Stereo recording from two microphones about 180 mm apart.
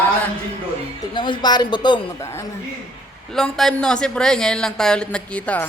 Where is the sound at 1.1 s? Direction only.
25° left (ahead or behind).